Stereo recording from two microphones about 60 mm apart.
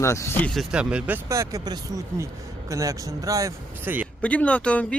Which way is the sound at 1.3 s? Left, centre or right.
Right.